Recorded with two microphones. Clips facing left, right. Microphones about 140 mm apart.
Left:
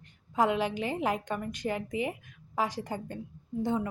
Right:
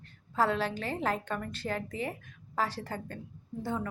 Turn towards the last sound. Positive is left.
turn(degrees=20)  # may be behind; listen again after turning